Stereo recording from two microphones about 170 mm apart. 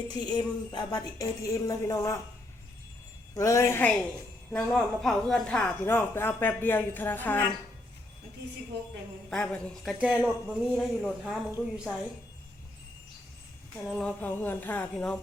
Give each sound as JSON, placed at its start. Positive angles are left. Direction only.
{"t": 0.1, "sound": "speech", "side_deg": 25}
{"t": 3.3, "sound": "speech", "side_deg": 20}
{"t": 9.3, "sound": "speech", "side_deg": 5}
{"t": 13.8, "sound": "speech", "side_deg": 5}